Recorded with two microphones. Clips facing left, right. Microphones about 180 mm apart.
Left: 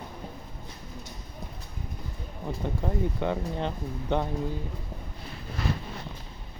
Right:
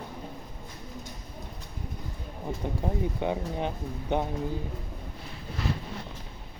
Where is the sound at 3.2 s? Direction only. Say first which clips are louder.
Even; 15° right (ahead or behind).